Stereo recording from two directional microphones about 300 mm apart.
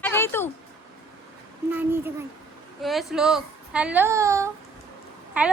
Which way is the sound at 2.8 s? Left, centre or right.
Centre.